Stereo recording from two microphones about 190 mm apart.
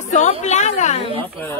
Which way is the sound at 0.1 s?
40° left (ahead or behind).